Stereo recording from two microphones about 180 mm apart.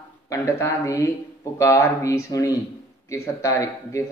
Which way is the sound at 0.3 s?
15° left (ahead or behind).